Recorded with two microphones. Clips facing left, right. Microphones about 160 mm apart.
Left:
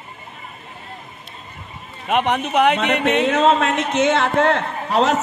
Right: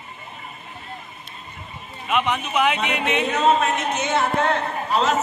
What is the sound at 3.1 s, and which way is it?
A man's voice, 85° left.